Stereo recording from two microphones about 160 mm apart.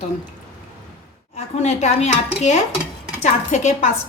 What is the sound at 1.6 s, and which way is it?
A woman's voice, 45° left (ahead or behind).